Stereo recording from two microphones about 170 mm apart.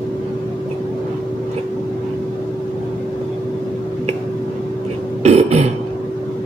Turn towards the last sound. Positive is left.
turn(degrees=-40)  # may be behind; listen again after turning